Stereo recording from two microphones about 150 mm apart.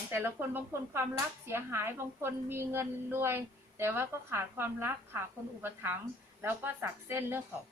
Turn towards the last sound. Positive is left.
turn(degrees=-15)  # may be behind; listen again after turning